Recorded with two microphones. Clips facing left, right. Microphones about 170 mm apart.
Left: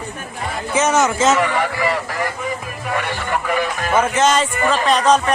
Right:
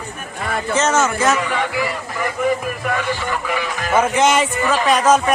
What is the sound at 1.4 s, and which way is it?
Speech, 80° left.